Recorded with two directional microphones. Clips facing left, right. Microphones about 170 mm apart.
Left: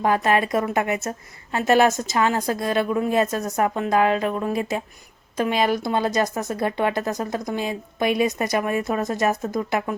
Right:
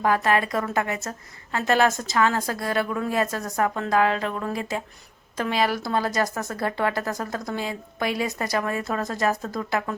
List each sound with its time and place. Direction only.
0.0 s speech: 20° left (ahead or behind)